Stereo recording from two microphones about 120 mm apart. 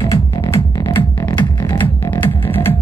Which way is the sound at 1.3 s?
35° left (ahead or behind).